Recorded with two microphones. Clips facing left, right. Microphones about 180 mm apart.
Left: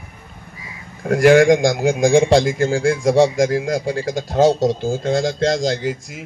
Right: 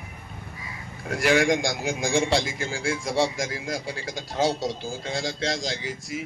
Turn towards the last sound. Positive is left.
turn(degrees=50)  # may be behind; listen again after turning